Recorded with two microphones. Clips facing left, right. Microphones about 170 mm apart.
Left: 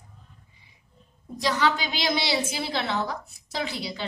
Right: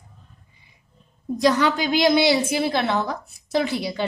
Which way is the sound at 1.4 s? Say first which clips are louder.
Right 6 dB; 50° right (ahead or behind).